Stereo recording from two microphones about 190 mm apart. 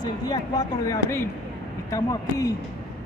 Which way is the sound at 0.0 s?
20° left (ahead or behind).